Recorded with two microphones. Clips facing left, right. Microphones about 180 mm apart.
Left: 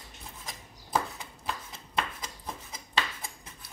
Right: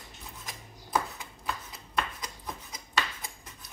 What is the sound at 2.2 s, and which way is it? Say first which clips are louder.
Rub: even; 25° left (ahead or behind).